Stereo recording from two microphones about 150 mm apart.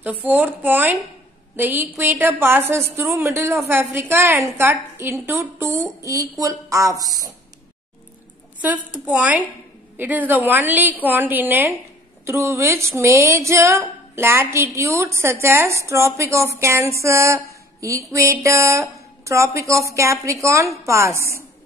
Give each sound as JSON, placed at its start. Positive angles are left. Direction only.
{"t": 0.0, "sound": "a woman's voice", "side_deg": -10}
{"t": 8.5, "sound": "a woman's voice", "side_deg": -10}